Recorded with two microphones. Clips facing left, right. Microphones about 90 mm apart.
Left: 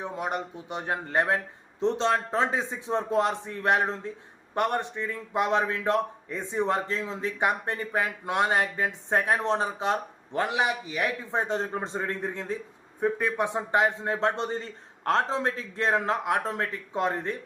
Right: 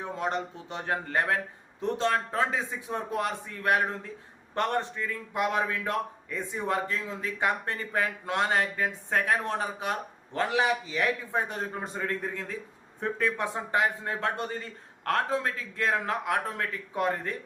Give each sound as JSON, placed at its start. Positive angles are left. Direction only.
{"t": 0.0, "sound": "a man's voice", "side_deg": 15}